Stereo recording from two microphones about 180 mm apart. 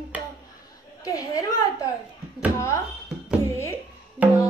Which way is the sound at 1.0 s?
20° left (ahead or behind).